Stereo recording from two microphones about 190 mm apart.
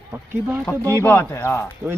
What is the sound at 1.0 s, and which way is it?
Speech, 10° left (ahead or behind).